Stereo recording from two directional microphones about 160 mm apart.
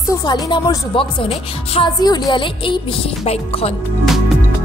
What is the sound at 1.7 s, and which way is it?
A woman's voice, 30° left (ahead or behind).